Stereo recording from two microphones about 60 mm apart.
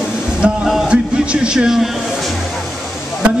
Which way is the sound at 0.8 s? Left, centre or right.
Centre.